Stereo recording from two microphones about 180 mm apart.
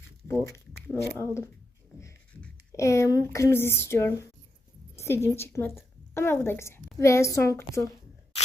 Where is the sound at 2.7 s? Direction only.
15° left (ahead or behind).